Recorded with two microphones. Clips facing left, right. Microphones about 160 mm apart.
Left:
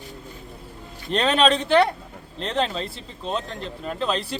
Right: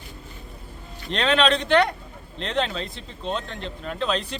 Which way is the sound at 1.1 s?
5° left (ahead or behind).